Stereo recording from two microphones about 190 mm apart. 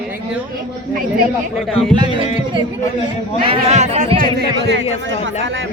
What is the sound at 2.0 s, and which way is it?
Music, 25° right (ahead or behind).